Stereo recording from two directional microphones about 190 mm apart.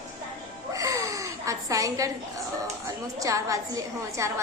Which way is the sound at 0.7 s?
15° right (ahead or behind).